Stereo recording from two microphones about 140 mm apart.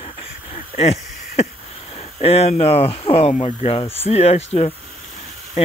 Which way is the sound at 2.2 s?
45° left (ahead or behind).